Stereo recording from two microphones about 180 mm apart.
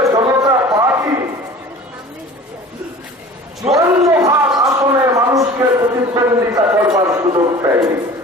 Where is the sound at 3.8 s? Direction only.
20° right (ahead or behind).